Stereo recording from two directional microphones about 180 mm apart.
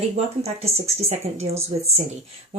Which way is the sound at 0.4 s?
35° right (ahead or behind).